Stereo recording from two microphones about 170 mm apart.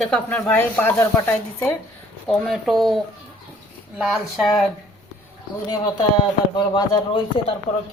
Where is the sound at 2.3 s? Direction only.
Centre (ahead or behind).